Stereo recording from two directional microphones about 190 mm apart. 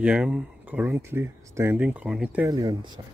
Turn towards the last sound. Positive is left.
turn(degrees=-20)  # may be behind; listen again after turning